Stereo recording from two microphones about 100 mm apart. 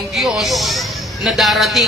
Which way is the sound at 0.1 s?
Centre (ahead or behind).